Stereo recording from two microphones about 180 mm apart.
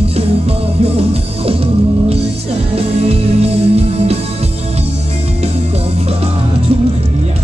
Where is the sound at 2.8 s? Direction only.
35° right (ahead or behind).